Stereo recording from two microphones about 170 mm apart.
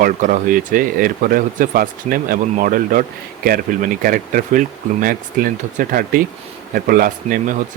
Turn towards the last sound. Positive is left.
turn(degrees=-55)  # may be behind; listen again after turning